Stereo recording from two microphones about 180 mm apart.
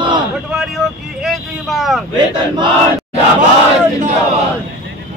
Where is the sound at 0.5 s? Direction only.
Centre (ahead or behind).